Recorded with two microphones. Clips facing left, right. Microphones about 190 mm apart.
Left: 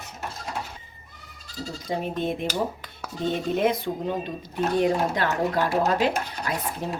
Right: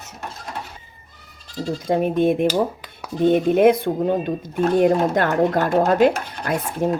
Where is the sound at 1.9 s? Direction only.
55° right (ahead or behind).